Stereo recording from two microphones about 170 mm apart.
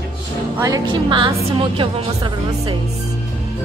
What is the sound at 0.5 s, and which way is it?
Speech, 20° right (ahead or behind).